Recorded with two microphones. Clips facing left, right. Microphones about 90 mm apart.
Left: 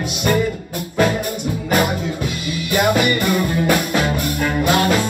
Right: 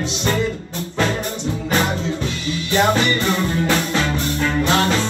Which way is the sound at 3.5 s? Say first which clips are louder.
Left 2 dB; 15° left (ahead or behind).